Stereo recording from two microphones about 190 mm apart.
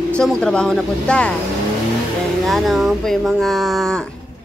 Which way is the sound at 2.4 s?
Centre (ahead or behind).